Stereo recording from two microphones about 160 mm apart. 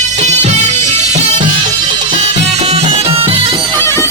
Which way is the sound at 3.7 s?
15° left (ahead or behind).